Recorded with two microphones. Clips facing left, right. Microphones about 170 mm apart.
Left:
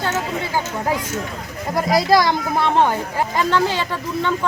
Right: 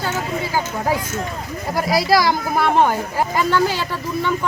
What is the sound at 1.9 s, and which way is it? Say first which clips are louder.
Speech: left 1 dB; 20° left (ahead or behind).